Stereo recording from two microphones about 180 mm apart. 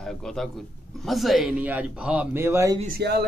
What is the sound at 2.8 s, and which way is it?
Speech, 60° right (ahead or behind).